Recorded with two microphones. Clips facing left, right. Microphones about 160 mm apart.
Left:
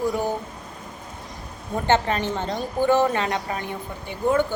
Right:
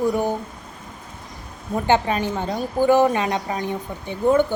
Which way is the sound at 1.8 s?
10° right (ahead or behind).